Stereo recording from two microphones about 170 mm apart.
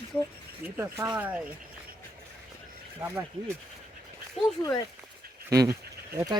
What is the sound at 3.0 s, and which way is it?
Speech, 10° right (ahead or behind).